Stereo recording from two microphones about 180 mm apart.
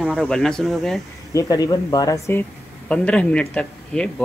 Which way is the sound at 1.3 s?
20° left (ahead or behind).